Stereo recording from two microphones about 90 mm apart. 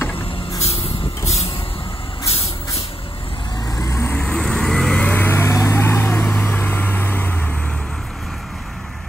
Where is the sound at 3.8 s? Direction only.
35° left (ahead or behind).